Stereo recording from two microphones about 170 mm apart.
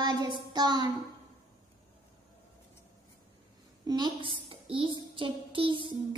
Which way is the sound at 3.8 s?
25° right (ahead or behind).